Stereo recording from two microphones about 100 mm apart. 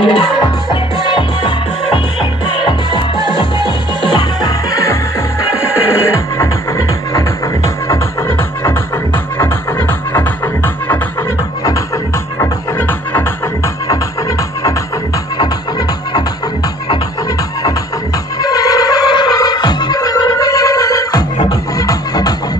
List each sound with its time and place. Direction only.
0.0 s music: 65° left (ahead or behind); by 4.9 s 40° left (ahead or behind)
7.2 s music: 30° left (ahead or behind)
12.4 s music: 20° left (ahead or behind)
18.4 s music: 40° left (ahead or behind)